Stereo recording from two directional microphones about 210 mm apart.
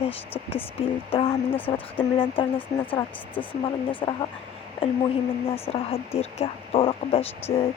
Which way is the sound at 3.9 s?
25° left (ahead or behind).